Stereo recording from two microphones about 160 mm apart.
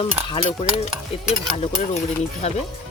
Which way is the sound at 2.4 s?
45° left (ahead or behind).